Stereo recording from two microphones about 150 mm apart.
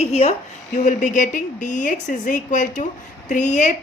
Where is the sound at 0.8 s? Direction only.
55° left (ahead or behind).